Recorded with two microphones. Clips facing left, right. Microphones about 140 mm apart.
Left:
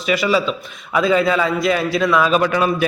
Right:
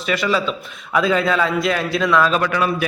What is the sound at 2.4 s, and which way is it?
Speech, 20° left (ahead or behind).